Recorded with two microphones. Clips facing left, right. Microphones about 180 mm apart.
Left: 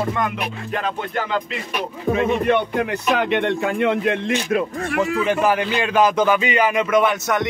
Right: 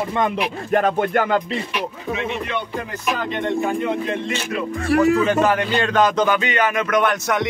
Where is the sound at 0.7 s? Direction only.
50° right (ahead or behind).